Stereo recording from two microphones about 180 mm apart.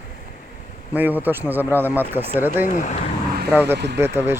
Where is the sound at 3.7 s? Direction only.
70° right (ahead or behind).